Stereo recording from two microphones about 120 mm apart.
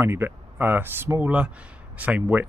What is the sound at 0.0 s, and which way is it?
Speech, 20° right (ahead or behind).